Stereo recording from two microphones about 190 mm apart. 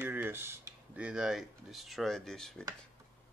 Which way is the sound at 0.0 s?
10° right (ahead or behind).